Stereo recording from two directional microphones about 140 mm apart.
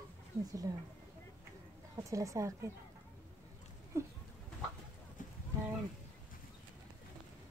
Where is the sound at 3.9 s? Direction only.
20° right (ahead or behind).